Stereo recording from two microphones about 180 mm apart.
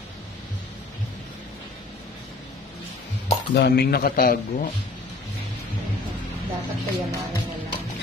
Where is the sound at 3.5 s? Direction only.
65° left (ahead or behind).